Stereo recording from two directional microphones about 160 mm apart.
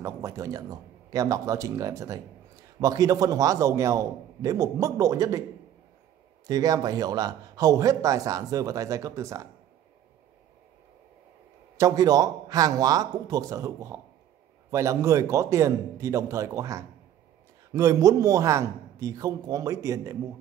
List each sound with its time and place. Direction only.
0.0 s a man's voice: 20° right (ahead or behind)
6.4 s a man's voice: 20° right (ahead or behind)
11.7 s a man's voice: 20° right (ahead or behind)